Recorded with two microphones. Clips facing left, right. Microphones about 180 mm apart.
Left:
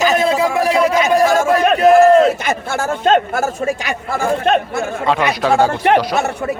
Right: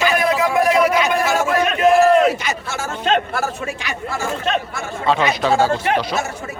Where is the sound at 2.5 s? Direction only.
55° left (ahead or behind).